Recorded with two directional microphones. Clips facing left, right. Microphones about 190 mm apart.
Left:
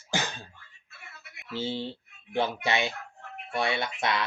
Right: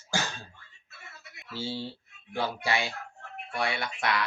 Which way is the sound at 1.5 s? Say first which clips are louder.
Left 3 dB; 20° left (ahead or behind).